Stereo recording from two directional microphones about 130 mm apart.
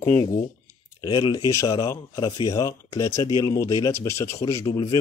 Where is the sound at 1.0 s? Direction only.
30° left (ahead or behind).